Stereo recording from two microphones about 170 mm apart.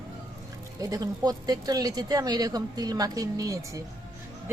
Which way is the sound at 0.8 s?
20° right (ahead or behind).